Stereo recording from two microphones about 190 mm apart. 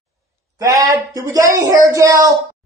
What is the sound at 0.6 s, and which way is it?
Speech, 15° right (ahead or behind).